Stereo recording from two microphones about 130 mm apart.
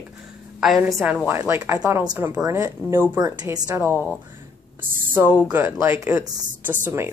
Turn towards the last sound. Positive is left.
turn(degrees=-20)  # may be behind; listen again after turning